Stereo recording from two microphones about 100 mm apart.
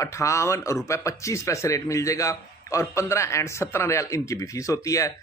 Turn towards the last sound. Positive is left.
turn(degrees=30)  # may be behind; listen again after turning